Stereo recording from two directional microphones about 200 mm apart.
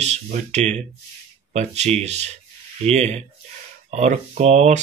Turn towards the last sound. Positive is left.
turn(degrees=-35)  # may be behind; listen again after turning